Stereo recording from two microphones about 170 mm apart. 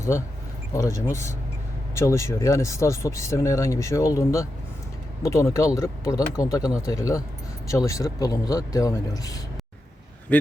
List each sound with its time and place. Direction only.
0.7 s a man's voice: 15° left (ahead or behind)